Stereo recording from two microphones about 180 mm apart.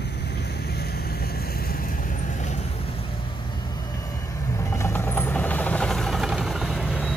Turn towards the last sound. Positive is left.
turn(degrees=0)  # may be behind; listen again after turning